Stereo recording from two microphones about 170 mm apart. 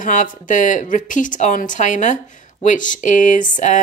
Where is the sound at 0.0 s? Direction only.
50° left (ahead or behind).